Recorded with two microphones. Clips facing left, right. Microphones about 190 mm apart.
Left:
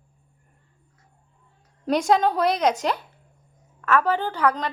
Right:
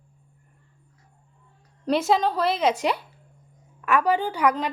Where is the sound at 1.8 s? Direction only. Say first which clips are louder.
Left 1 dB; 5° right (ahead or behind).